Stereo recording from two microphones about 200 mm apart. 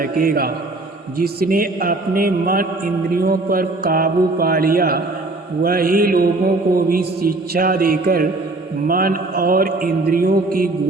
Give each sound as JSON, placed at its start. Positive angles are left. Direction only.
{"t": 0.0, "sound": "a man's voice", "side_deg": -45}